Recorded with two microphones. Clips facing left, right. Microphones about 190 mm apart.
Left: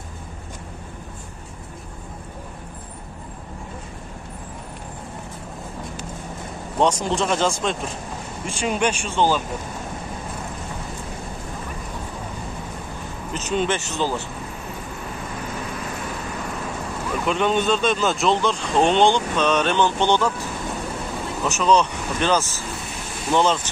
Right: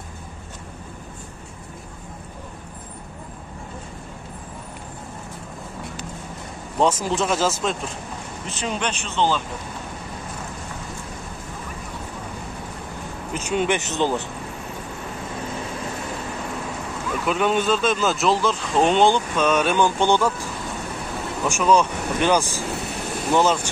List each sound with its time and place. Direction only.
6.8 s speech: 5° right (ahead or behind)
8.5 s speech: 10° left (ahead or behind)
13.3 s speech: 10° right (ahead or behind)
17.3 s speech: 5° right (ahead or behind)
21.5 s speech: 10° right (ahead or behind)